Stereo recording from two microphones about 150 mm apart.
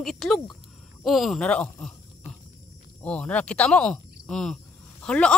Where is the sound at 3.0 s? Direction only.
5° left (ahead or behind).